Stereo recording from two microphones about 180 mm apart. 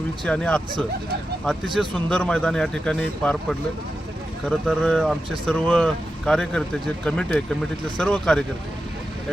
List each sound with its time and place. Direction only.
0.3 s speech: 5° left (ahead or behind)
4.4 s speech: 5° left (ahead or behind)